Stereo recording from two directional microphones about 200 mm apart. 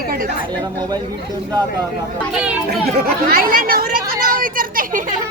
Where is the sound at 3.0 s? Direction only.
45° right (ahead or behind).